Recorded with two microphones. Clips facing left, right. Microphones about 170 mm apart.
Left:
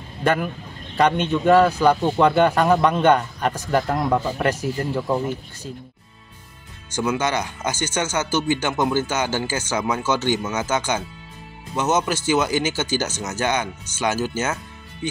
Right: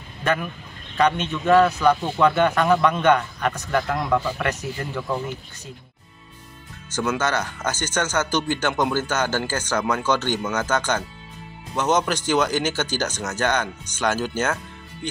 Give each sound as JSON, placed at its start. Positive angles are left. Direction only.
{"t": 0.9, "sound": "a man's voice", "side_deg": 35}
{"t": 7.0, "sound": "speech", "side_deg": 10}